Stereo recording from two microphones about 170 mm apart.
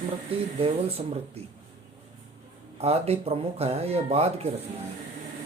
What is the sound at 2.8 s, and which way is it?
Speech, 35° right (ahead or behind).